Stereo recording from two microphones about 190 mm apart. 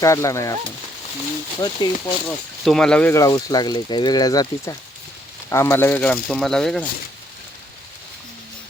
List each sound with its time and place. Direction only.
0.0 s speech: 15° left (ahead or behind)
1.6 s speech: 20° left (ahead or behind)
2.6 s speech: 5° left (ahead or behind)